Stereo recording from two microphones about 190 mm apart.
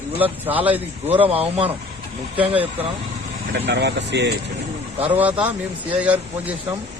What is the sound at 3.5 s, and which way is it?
Speech, 65° right (ahead or behind).